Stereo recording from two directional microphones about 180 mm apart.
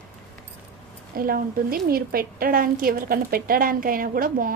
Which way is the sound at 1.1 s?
55° right (ahead or behind).